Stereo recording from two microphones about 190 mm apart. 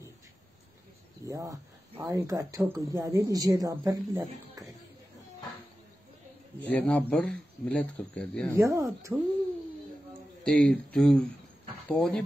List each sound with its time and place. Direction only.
1.2 s speech: 15° right (ahead or behind)
6.7 s speech: 10° left (ahead or behind)
8.5 s speech: 15° right (ahead or behind)
10.4 s speech: 5° left (ahead or behind)